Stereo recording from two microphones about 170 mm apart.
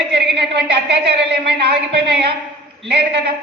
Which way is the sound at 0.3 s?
75° right (ahead or behind).